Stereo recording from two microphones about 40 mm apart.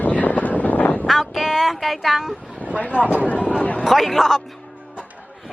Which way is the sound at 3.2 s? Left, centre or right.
Left.